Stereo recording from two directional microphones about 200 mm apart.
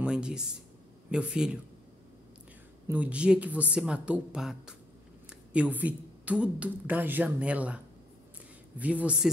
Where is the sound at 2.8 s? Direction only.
5° right (ahead or behind).